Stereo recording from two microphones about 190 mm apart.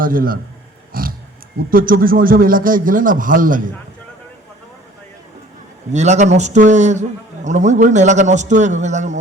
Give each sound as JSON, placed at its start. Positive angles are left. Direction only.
{"t": 0.0, "sound": "a man's voice", "side_deg": -50}
{"t": 5.9, "sound": "a man's voice", "side_deg": -35}